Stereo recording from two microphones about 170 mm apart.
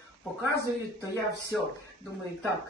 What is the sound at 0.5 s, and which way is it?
Speech, 15° right (ahead or behind).